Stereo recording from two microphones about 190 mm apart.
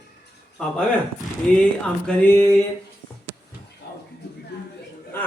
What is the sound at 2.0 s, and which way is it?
Speech, 10° left (ahead or behind).